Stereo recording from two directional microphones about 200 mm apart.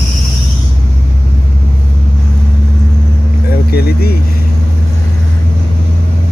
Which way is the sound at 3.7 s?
50° left (ahead or behind).